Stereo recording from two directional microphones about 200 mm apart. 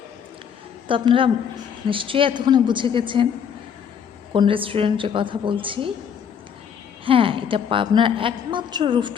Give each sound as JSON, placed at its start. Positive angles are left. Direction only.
{"t": 0.9, "sound": "a woman's voice", "side_deg": -25}
{"t": 4.4, "sound": "a woman's voice", "side_deg": -25}
{"t": 7.0, "sound": "a woman's voice", "side_deg": -25}